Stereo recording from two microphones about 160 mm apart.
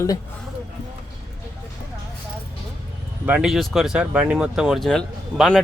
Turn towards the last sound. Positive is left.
turn(degrees=5)  # may be behind; listen again after turning